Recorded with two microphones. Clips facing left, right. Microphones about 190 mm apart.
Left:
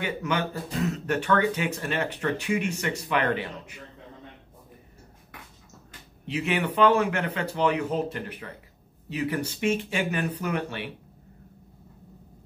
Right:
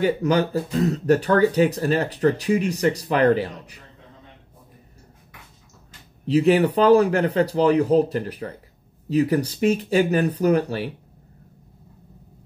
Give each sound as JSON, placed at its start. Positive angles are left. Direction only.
{"t": 0.0, "sound": "speech", "side_deg": -35}
{"t": 6.2, "sound": "speech", "side_deg": -35}